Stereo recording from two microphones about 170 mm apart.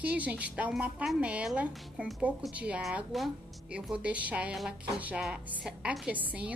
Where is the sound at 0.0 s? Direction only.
10° right (ahead or behind).